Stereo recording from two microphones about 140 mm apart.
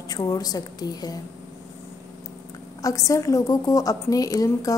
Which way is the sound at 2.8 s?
25° left (ahead or behind).